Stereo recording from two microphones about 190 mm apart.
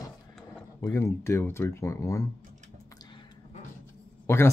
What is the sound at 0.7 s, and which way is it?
Speech, 20° left (ahead or behind).